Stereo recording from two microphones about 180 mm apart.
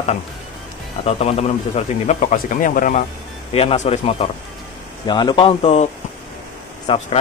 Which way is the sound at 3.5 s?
35° left (ahead or behind).